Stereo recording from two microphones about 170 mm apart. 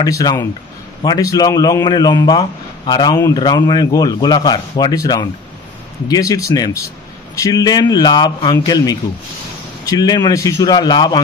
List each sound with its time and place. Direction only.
0.0 s a man's voice: 20° left (ahead or behind)